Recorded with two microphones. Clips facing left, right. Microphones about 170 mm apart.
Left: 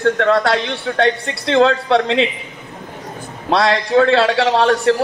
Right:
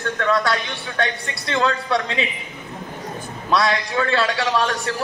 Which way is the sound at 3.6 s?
70° left (ahead or behind).